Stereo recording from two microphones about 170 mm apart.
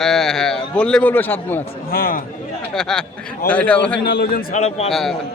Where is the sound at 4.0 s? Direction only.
65° left (ahead or behind).